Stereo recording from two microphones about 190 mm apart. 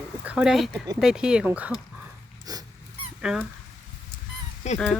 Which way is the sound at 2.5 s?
20° right (ahead or behind).